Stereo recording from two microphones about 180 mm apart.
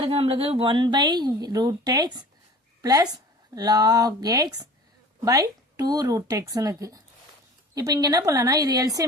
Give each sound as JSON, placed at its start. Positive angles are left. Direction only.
{"t": 0.0, "sound": "speech", "side_deg": -30}